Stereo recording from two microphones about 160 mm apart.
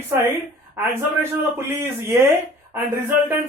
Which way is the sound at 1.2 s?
15° right (ahead or behind).